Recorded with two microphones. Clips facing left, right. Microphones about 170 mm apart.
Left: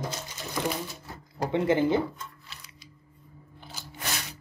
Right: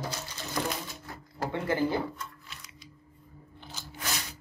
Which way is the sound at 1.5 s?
20° left (ahead or behind).